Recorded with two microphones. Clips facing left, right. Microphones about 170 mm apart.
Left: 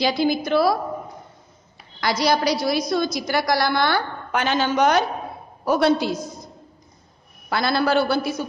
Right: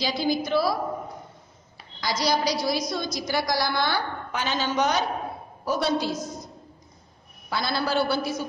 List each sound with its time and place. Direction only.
0.0 s a woman's voice: 60° left (ahead or behind)
2.0 s a woman's voice: 60° left (ahead or behind)
7.4 s a woman's voice: 60° left (ahead or behind)